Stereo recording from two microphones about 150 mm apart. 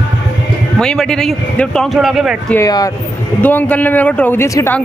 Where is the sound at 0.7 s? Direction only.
5° left (ahead or behind).